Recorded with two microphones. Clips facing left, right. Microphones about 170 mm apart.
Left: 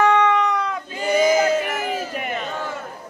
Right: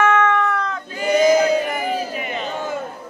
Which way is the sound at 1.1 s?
5° left (ahead or behind).